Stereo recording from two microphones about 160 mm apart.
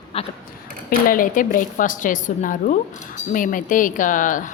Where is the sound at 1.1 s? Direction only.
55° left (ahead or behind).